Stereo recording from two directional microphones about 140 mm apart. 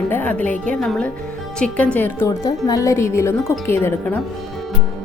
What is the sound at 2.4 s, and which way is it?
A woman's voice, 25° left (ahead or behind).